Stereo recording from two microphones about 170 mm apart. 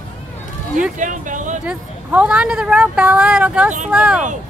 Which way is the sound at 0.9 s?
50° right (ahead or behind).